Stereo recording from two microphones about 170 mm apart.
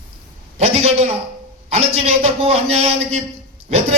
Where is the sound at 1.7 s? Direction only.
40° right (ahead or behind).